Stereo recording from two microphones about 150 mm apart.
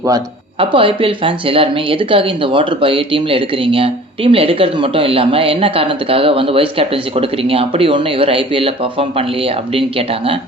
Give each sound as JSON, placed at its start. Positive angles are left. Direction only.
{"t": 0.6, "sound": "speech", "side_deg": -35}